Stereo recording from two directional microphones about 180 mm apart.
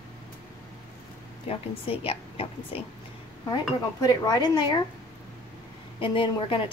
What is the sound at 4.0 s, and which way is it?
Speech, 20° left (ahead or behind).